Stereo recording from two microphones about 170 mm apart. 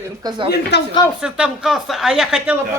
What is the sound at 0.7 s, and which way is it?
Speech, 80° left.